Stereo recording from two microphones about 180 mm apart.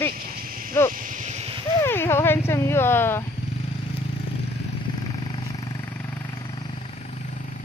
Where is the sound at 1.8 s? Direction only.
15° left (ahead or behind).